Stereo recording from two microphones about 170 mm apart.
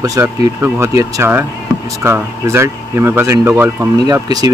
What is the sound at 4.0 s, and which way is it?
Speech, 20° right (ahead or behind).